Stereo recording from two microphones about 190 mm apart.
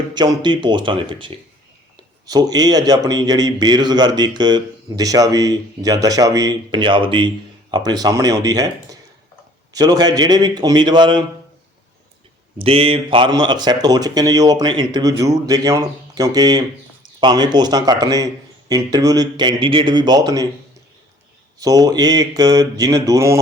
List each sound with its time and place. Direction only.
0.1 s a man's voice: 20° right (ahead or behind)
12.5 s a man's voice: 30° right (ahead or behind)
21.6 s a man's voice: 20° right (ahead or behind)